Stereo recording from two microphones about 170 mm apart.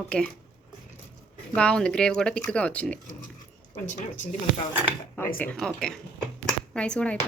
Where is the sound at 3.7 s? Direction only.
45° left (ahead or behind).